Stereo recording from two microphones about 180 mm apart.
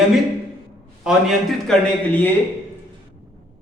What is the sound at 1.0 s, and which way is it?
Speech, centre (ahead or behind).